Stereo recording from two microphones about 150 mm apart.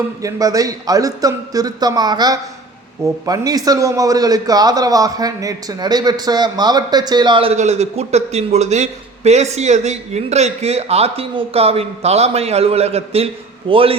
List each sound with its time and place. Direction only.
0.2 s a man's voice: 25° right (ahead or behind)
7.5 s a man's voice: 50° right (ahead or behind)